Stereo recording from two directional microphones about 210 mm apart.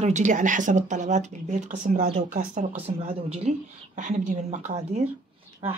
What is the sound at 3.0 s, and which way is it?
Speech, 25° right (ahead or behind).